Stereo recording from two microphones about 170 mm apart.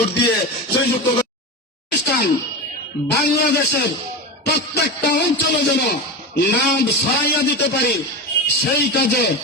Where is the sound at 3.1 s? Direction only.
70° left (ahead or behind).